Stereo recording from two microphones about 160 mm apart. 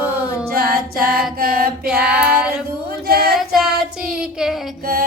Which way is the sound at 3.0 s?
75° right (ahead or behind).